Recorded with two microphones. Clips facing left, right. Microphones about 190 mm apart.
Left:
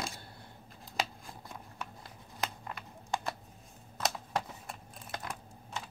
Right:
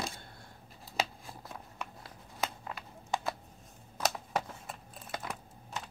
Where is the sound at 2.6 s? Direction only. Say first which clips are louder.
Right 1 dB; centre (ahead or behind).